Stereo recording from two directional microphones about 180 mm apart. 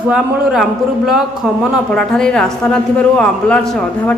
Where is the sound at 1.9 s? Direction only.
5° left (ahead or behind).